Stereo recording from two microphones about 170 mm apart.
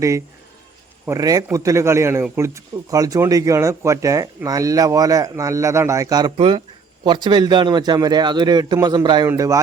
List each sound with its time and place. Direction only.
1.0 s a man's voice: 20° right (ahead or behind)